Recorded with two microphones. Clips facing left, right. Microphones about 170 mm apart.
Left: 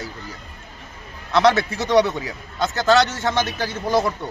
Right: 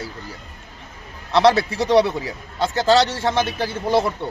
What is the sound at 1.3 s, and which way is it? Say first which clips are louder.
A man's voice: right 1 dB; 30° right (ahead or behind).